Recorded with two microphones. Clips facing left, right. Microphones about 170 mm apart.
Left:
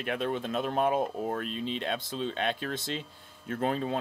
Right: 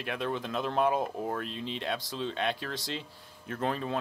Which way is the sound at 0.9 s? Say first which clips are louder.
Left 2 dB; 25° left (ahead or behind).